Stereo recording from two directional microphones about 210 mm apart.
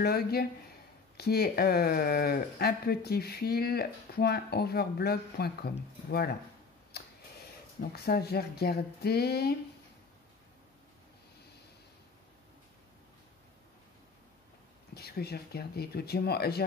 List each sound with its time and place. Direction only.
0.0 s speech: 45° left (ahead or behind)
7.8 s speech: 50° left (ahead or behind)
15.0 s speech: 50° left (ahead or behind)